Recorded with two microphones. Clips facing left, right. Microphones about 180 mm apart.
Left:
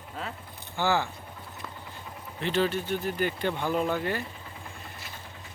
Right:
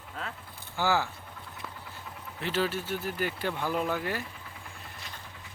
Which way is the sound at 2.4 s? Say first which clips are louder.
Left 3 dB; 5° right (ahead or behind).